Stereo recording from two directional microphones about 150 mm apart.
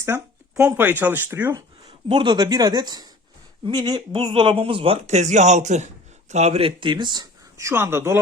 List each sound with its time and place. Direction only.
0.1 s speech: 15° right (ahead or behind)
2.0 s speech: 30° right (ahead or behind); by 8.2 s 15° right (ahead or behind)